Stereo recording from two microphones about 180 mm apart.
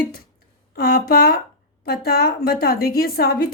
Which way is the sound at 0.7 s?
55° left (ahead or behind).